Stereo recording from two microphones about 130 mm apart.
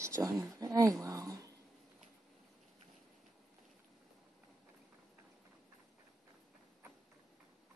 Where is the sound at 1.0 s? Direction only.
25° right (ahead or behind).